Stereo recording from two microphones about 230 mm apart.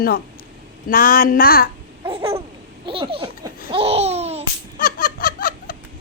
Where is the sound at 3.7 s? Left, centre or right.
Right.